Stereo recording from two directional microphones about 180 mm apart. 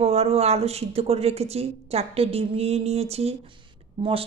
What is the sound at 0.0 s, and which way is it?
Speech, 35° right (ahead or behind).